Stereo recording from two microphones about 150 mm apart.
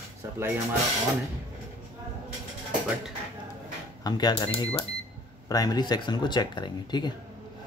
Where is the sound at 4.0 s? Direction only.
25° left (ahead or behind).